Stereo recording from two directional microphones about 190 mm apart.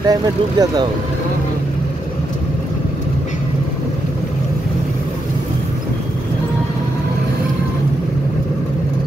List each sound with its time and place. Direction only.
0.0 s speech: 20° right (ahead or behind)